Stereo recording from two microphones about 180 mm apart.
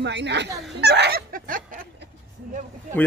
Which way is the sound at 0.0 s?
75° right (ahead or behind).